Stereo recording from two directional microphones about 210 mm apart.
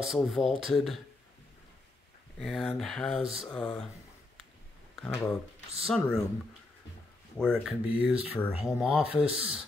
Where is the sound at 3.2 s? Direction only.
25° right (ahead or behind).